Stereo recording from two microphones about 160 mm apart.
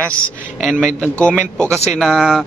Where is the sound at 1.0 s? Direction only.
5° left (ahead or behind).